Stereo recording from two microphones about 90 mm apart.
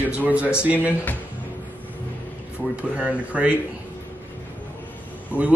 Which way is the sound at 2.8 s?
10° right (ahead or behind).